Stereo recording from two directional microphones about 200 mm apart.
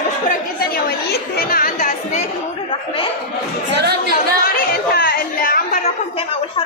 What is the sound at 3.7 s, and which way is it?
Speech, 55° right (ahead or behind).